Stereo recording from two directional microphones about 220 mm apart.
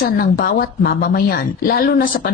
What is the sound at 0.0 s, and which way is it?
A woman's voice, 45° left (ahead or behind).